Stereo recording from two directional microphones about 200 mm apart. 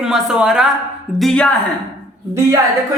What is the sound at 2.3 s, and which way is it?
Speech, 15° right (ahead or behind).